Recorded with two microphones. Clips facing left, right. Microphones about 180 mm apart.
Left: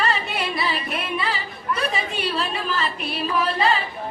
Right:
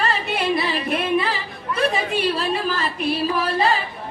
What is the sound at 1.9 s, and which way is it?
Speech, 40° right (ahead or behind).